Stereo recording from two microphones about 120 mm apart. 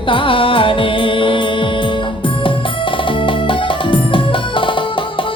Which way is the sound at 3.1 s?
45° left (ahead or behind).